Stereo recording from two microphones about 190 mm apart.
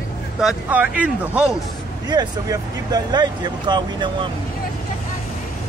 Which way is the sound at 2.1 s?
20° right (ahead or behind).